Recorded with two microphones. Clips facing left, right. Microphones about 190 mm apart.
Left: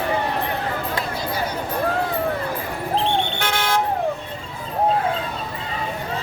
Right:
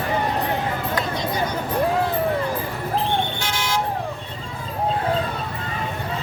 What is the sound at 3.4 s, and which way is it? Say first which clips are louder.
Toot: left 3 dB; 60° left (ahead or behind).